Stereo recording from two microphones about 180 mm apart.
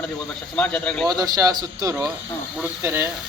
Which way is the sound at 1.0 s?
20° right (ahead or behind).